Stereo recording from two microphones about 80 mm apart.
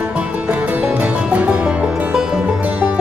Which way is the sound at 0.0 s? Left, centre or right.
Centre.